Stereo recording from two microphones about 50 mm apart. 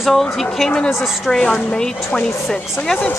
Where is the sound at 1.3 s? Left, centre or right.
Centre.